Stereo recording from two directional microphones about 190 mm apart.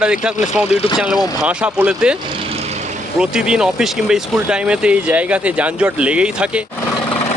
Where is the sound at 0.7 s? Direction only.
30° left (ahead or behind).